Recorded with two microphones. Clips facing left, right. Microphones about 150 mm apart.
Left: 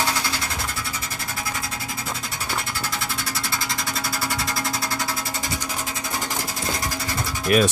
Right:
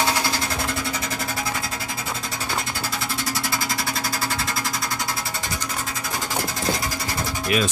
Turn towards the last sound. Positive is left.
turn(degrees=45)  # may be behind; listen again after turning